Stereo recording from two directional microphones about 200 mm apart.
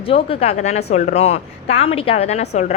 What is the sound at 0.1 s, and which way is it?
Speech, 30° left (ahead or behind).